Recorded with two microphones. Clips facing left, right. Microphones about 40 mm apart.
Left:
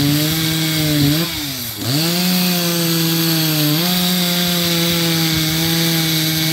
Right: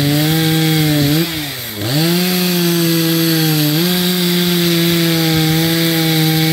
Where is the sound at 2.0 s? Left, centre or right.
Centre.